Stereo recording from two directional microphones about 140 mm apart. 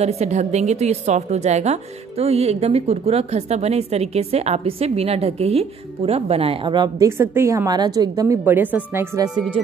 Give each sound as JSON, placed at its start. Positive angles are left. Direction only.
{"t": 0.0, "sound": "a woman's voice", "side_deg": -50}
{"t": 7.1, "sound": "a woman's voice", "side_deg": -20}